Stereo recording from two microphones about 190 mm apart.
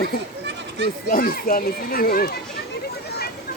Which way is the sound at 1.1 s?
50° left (ahead or behind).